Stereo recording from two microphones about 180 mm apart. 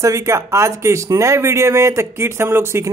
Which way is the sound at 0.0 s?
15° right (ahead or behind).